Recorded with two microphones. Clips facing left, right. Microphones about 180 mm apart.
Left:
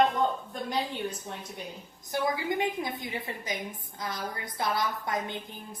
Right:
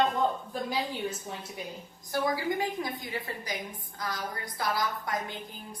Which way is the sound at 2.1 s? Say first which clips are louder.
Even; 20° left (ahead or behind).